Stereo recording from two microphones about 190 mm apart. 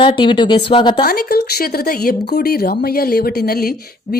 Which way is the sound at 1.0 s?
50° left (ahead or behind).